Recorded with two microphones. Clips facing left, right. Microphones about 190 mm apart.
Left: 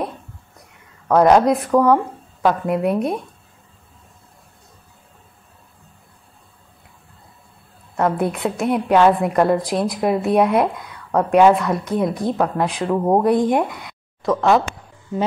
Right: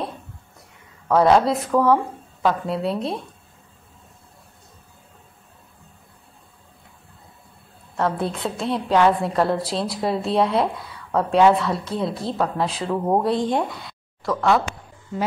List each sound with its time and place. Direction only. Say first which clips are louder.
1.2 s a woman's voice: left 3 dB; 15° left (ahead or behind)
7.9 s a woman's voice: left 4 dB; 15° left (ahead or behind)